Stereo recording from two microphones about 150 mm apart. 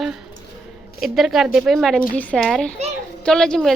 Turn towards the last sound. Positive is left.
turn(degrees=5)  # may be behind; listen again after turning